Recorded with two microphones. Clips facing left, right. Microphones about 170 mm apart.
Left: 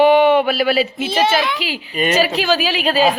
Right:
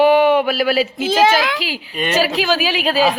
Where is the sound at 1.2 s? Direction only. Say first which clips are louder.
Right 2 dB; 90° right.